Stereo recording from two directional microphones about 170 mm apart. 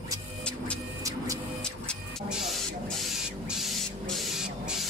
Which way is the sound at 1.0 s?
20° right (ahead or behind).